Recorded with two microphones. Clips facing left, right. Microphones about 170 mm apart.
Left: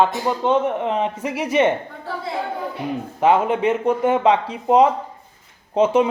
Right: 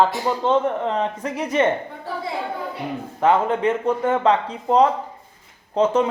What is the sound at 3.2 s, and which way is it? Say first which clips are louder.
Speech: left 1 dB; 15° left (ahead or behind).